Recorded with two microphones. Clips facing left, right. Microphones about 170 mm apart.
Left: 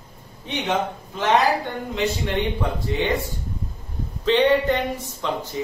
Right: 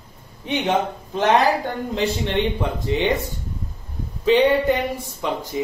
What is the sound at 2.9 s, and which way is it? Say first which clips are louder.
Speech: right 3 dB; 20° right (ahead or behind).